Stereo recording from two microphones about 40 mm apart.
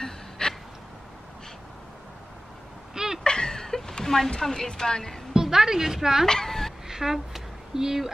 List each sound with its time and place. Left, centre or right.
0.0 s gasp: centre
2.9 s a sound: centre
3.3 s chuckle: centre
4.3 s a woman's voice: centre
5.3 s a woman's voice: centre
6.2 s speech: centre
6.9 s a sound: centre